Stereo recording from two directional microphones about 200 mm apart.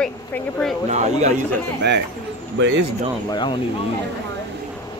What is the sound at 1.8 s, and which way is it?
Speech, 60° right (ahead or behind).